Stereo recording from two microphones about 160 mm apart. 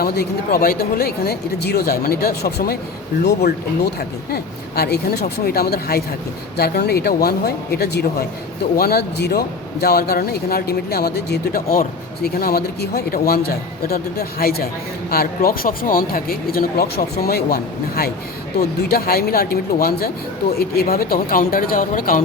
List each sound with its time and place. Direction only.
0.0 s speech: 75° left (ahead or behind)
4.3 s speech: 80° left; by 22.2 s 60° left (ahead or behind)